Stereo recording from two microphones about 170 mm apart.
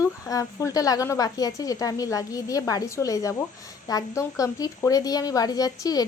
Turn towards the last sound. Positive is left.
turn(degrees=20)  # may be behind; listen again after turning